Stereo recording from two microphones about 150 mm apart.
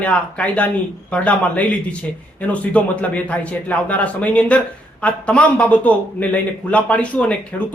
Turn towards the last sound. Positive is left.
turn(degrees=10)  # may be behind; listen again after turning